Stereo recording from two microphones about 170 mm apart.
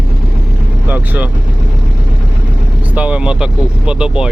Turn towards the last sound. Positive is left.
turn(degrees=-5)  # may be behind; listen again after turning